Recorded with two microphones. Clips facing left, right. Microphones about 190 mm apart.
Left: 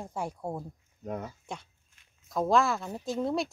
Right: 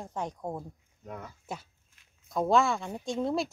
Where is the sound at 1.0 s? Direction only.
40° left (ahead or behind).